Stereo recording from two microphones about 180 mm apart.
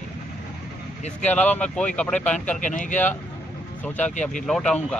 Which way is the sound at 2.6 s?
45° left (ahead or behind).